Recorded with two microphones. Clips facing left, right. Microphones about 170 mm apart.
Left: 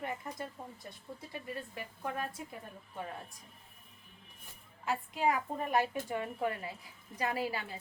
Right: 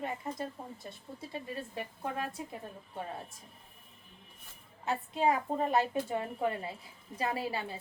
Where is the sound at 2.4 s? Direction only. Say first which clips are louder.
Right 3 dB; 25° right (ahead or behind).